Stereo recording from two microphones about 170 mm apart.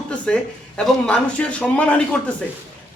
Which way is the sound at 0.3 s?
5° left (ahead or behind).